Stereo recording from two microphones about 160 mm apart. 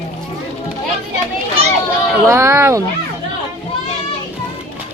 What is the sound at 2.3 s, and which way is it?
Speech, 15° right (ahead or behind).